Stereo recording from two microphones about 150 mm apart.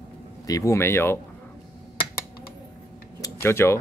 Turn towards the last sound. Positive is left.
turn(degrees=15)  # may be behind; listen again after turning